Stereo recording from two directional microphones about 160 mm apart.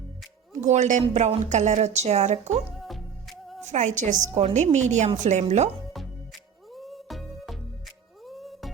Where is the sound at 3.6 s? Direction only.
45° right (ahead or behind).